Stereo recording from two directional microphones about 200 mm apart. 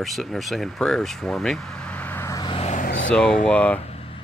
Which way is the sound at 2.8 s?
60° left (ahead or behind).